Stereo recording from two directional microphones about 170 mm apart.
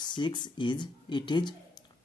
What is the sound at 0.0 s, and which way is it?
Speech, 25° left (ahead or behind).